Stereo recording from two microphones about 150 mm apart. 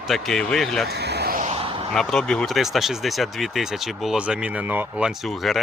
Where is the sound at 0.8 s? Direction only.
90° right.